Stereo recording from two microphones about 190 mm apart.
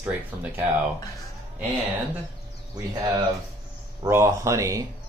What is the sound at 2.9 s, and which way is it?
Speech, 15° right (ahead or behind).